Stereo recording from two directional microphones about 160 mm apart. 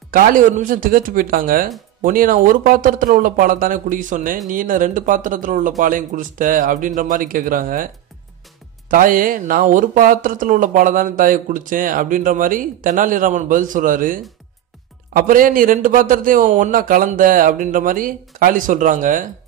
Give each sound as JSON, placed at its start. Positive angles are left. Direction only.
{"t": 0.1, "sound": "speech", "side_deg": -60}
{"t": 8.9, "sound": "speech", "side_deg": -60}